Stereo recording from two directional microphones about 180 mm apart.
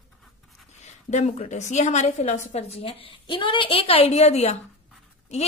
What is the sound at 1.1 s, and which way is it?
A woman's voice, 40° left (ahead or behind).